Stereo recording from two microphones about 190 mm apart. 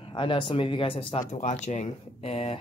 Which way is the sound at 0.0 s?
25° left (ahead or behind).